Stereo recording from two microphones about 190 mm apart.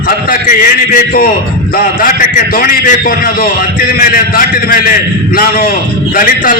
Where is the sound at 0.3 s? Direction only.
45° left (ahead or behind).